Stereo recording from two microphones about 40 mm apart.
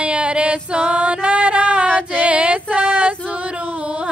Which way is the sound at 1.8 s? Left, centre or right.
Left.